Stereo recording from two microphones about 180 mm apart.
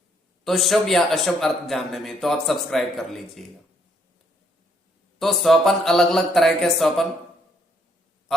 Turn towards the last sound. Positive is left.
turn(degrees=0)  # may be behind; listen again after turning